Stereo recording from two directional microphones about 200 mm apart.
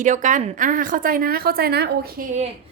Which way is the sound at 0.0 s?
40° right (ahead or behind).